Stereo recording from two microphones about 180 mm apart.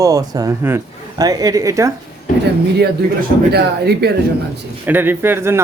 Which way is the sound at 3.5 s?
65° right (ahead or behind).